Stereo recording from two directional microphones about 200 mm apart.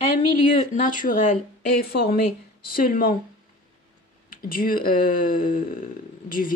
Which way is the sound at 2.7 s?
45° left (ahead or behind).